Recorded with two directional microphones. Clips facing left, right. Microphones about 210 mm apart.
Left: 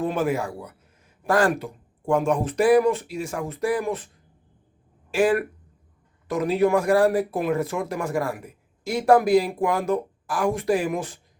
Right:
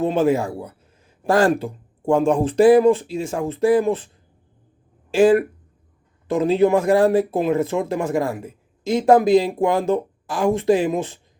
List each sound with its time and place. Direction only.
0.0 s speech: 25° right (ahead or behind)
5.1 s speech: 25° right (ahead or behind)